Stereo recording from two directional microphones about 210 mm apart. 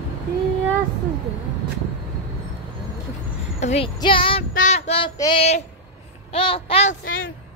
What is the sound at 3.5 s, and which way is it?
Speech, 30° left (ahead or behind).